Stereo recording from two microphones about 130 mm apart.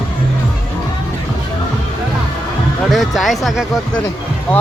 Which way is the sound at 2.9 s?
Centre (ahead or behind).